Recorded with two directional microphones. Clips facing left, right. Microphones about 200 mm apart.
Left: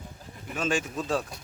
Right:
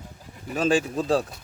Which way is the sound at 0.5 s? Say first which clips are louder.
Right 6 dB; 35° right (ahead or behind).